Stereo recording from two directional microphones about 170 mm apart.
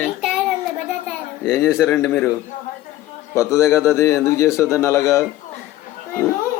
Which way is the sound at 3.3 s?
15° left (ahead or behind).